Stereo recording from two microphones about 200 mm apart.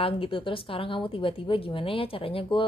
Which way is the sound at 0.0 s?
25° left (ahead or behind).